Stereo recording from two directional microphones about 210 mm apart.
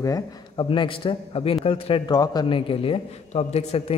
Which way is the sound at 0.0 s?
20° left (ahead or behind).